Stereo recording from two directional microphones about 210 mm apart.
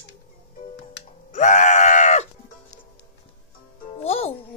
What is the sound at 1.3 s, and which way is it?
Screaming, 35° left (ahead or behind).